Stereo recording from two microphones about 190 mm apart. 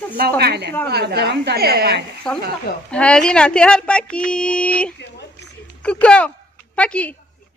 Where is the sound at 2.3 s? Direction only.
5° left (ahead or behind).